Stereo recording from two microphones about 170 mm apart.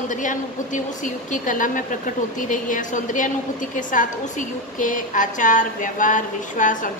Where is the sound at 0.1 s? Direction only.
50° left (ahead or behind).